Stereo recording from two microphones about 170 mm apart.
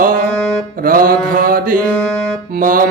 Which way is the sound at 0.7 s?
55° right (ahead or behind).